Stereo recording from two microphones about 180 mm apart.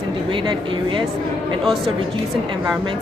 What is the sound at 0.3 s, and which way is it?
Speech, 25° right (ahead or behind).